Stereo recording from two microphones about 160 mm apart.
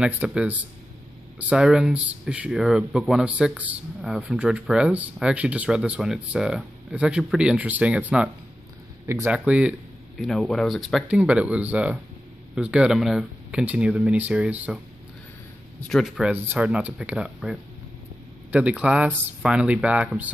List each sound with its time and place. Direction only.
0.0 s speech: 5° right (ahead or behind)
9.3 s speech: 5° right (ahead or behind)
15.9 s speech: centre (ahead or behind)